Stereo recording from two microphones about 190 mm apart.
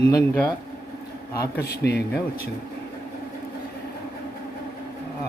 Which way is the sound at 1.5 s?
55° left (ahead or behind).